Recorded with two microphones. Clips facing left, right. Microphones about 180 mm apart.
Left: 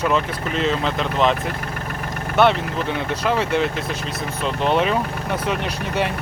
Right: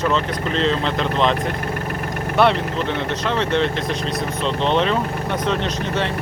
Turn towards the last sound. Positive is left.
turn(degrees=10)  # may be behind; listen again after turning